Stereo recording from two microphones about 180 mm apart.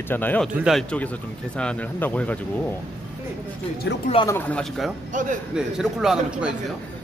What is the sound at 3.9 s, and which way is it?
Speech, 75° left (ahead or behind).